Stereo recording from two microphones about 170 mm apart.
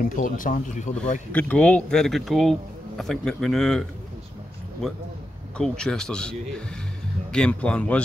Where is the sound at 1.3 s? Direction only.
5° left (ahead or behind).